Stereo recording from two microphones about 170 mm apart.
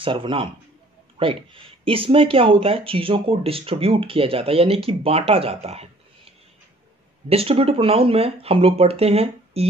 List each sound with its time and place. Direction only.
0.0 s a man's voice: 30° right (ahead or behind)
7.2 s speech: 35° right (ahead or behind)